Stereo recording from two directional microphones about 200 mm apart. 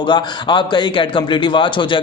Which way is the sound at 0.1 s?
20° left (ahead or behind).